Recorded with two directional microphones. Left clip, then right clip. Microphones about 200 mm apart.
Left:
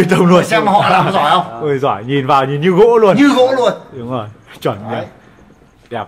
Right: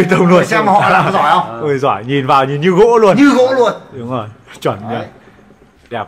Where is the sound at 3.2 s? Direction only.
20° left (ahead or behind).